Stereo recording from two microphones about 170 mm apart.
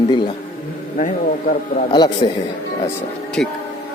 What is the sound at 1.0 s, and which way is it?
Speech, 50° left (ahead or behind).